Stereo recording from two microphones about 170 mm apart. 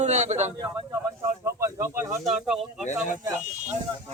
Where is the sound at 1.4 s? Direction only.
15° right (ahead or behind).